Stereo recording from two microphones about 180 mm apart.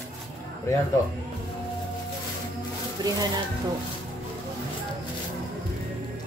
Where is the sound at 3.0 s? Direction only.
20° right (ahead or behind).